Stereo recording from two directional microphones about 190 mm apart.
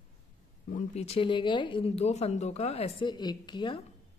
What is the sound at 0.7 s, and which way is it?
A woman's voice, 40° left (ahead or behind).